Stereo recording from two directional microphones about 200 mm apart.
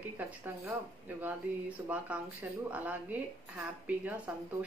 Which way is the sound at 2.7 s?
10° right (ahead or behind).